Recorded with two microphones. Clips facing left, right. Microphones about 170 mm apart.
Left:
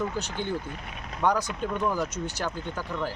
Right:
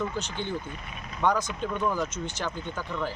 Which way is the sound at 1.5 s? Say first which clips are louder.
Left 1 dB; 5° left (ahead or behind).